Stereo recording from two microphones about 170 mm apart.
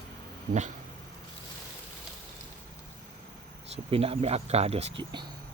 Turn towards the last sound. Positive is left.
turn(degrees=-40)  # may be behind; listen again after turning